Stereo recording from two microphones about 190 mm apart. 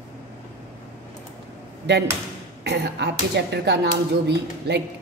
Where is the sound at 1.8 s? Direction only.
60° right (ahead or behind).